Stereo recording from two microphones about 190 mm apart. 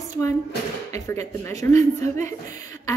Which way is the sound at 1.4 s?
15° left (ahead or behind).